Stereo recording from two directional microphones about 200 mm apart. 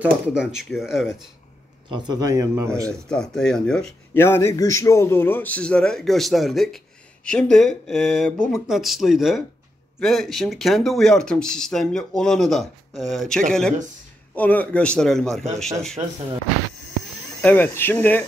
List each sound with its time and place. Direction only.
0.0 s speech: 5° right (ahead or behind)
1.9 s speech: 20° right (ahead or behind)
2.9 s speech: 5° left (ahead or behind)
17.4 s speech: 10° left (ahead or behind)